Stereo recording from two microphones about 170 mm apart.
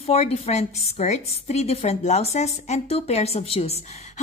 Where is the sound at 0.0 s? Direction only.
35° left (ahead or behind).